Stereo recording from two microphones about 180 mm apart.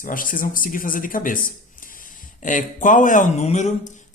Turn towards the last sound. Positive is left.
turn(degrees=40)  # may be behind; listen again after turning